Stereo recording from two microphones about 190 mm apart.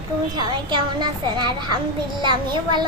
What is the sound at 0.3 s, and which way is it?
A woman's voice, 25° right (ahead or behind).